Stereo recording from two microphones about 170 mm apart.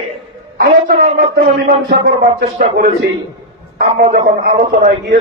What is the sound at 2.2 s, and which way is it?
Speech, 45° right (ahead or behind).